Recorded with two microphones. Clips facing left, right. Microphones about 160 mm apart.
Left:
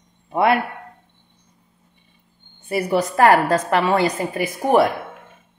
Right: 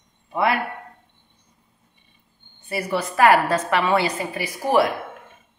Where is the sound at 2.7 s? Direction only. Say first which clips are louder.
Left 5 dB; 40° left (ahead or behind).